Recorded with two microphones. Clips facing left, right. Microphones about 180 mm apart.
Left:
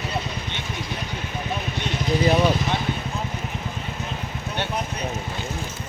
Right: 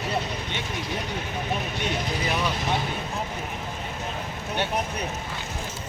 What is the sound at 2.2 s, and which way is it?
Vehicle, 35° left (ahead or behind).